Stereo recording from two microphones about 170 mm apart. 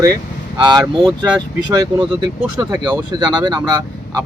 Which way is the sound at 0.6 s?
25° right (ahead or behind).